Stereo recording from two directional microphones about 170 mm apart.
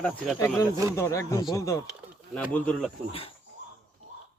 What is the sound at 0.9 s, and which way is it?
Speech, 15° left (ahead or behind).